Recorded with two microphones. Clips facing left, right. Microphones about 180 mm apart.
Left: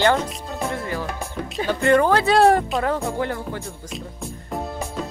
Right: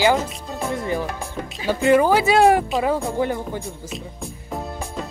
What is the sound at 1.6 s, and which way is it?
Speech, 10° right (ahead or behind).